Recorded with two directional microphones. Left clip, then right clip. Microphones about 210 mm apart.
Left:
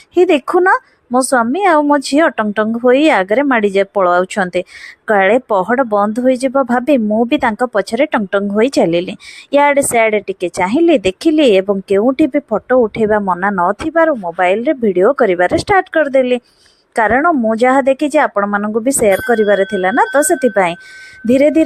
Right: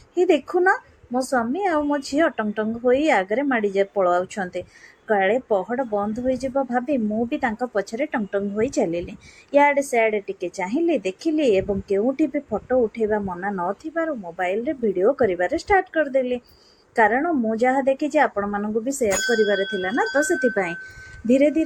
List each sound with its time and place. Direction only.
0.1 s speech: 50° left (ahead or behind)